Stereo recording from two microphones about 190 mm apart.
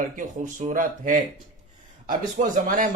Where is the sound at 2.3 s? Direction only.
45° right (ahead or behind).